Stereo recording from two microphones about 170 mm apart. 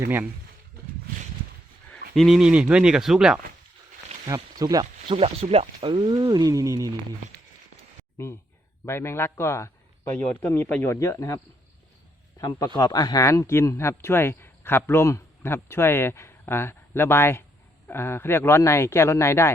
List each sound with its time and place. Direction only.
1.9 s speech: centre (ahead or behind)
4.5 s speech: 20° right (ahead or behind)
8.2 s a man's voice: 15° left (ahead or behind)
12.4 s a man's voice: 25° left (ahead or behind)